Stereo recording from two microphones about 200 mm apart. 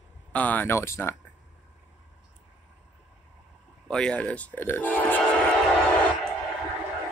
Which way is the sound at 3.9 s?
5° left (ahead or behind).